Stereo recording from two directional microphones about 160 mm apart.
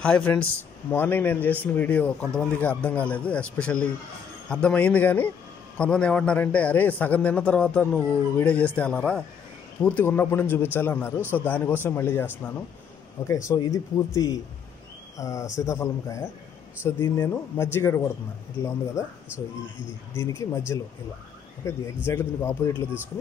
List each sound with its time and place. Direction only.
0.0 s a man's voice: 10° left (ahead or behind)
13.5 s a man's voice: 20° left (ahead or behind)
20.2 s a man's voice: 20° left (ahead or behind)